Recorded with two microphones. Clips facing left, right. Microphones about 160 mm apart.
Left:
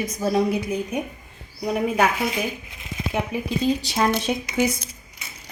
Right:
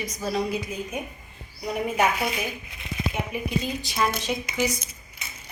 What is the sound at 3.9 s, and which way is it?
Speech, 55° left (ahead or behind).